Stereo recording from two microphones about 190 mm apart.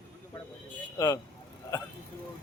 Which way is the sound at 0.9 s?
15° left (ahead or behind).